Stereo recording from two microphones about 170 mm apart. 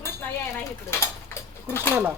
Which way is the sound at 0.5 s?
15° left (ahead or behind).